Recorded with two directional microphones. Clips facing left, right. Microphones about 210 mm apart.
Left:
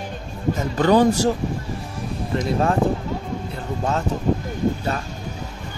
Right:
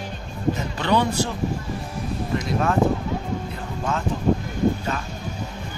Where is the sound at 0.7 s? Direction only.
45° left (ahead or behind).